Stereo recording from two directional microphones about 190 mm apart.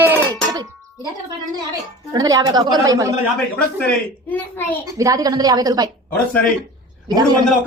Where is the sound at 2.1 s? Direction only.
20° right (ahead or behind).